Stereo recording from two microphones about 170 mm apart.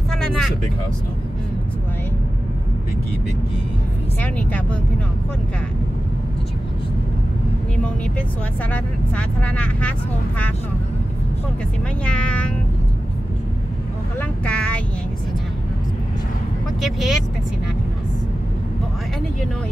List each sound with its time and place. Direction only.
0.1 s vehicle: 5° left (ahead or behind)
4.2 s speech: 10° left (ahead or behind)
7.7 s speech: 5° left (ahead or behind)
12.0 s speech: 5° left (ahead or behind)
14.4 s speech: 5° left (ahead or behind)
16.8 s speech: centre (ahead or behind)